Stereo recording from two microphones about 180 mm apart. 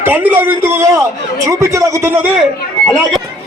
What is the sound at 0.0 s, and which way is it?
A man's voice, 10° right (ahead or behind).